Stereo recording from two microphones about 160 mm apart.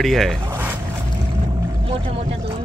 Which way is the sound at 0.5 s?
15° right (ahead or behind).